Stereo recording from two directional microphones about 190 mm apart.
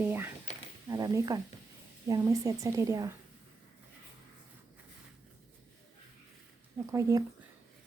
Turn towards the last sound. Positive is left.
turn(degrees=-15)  # may be behind; listen again after turning